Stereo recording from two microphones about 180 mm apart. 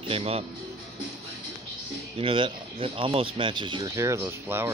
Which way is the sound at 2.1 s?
30° right (ahead or behind).